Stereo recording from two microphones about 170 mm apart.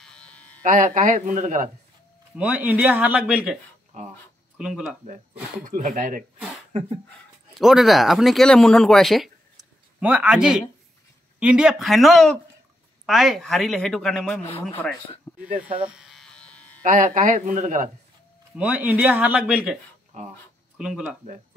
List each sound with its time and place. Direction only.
0.0 s electric shaver: 5° left (ahead or behind)
0.7 s speech: 45° right (ahead or behind)
2.3 s speech: 10° right (ahead or behind)
4.6 s speech: 5° right (ahead or behind)
5.7 s speech: 50° right (ahead or behind)
6.3 s a sound: centre (ahead or behind)
7.5 s speech: centre (ahead or behind)
15.5 s speech: 10° right (ahead or behind)
16.0 s electric shaver: centre (ahead or behind)
16.8 s speech: 50° right (ahead or behind)
18.6 s speech: 10° right (ahead or behind)
20.1 s speech: 45° right (ahead or behind)
20.7 s speech: 5° right (ahead or behind)